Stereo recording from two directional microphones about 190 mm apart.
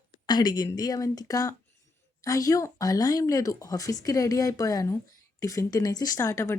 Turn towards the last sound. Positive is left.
turn(degrees=15)  # may be behind; listen again after turning